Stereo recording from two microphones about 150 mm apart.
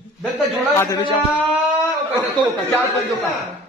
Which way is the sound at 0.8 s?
25° left (ahead or behind).